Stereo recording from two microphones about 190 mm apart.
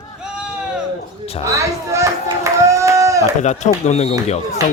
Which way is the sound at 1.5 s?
15° right (ahead or behind).